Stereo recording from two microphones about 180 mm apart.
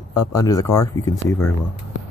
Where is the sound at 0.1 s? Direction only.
20° left (ahead or behind).